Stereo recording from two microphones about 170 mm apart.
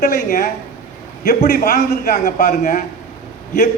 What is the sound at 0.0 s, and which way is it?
Speech, 60° left (ahead or behind).